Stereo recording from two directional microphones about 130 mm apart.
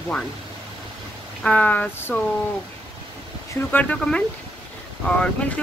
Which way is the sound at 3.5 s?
10° left (ahead or behind).